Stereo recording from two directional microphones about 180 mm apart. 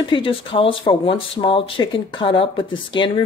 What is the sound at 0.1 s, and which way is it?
Speech, 30° left (ahead or behind).